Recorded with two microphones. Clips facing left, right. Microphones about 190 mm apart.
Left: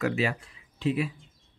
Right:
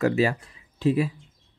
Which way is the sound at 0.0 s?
40° right (ahead or behind).